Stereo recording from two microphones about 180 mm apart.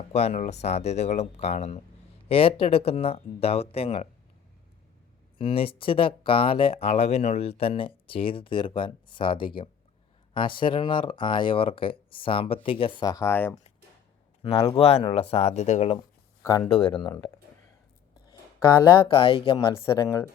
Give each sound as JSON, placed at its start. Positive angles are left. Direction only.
{"t": 0.1, "sound": "speech", "side_deg": 35}
{"t": 5.4, "sound": "speech", "side_deg": 30}
{"t": 14.8, "sound": "speech", "side_deg": 35}
{"t": 16.4, "sound": "speech", "side_deg": 15}
{"t": 16.7, "sound": "speech", "side_deg": 30}
{"t": 19.0, "sound": "speech", "side_deg": 30}
{"t": 19.7, "sound": "speech", "side_deg": 15}